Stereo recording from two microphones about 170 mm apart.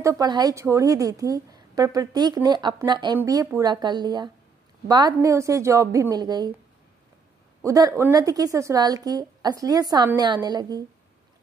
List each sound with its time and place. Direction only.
0.0 s a woman's voice: 20° right (ahead or behind)
7.6 s a woman's voice: 20° right (ahead or behind)